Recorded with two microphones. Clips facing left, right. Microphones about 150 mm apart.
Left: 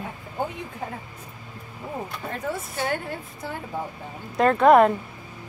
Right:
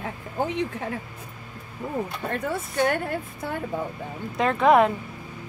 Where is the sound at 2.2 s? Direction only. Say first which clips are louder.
Right 4 dB; 60° right (ahead or behind).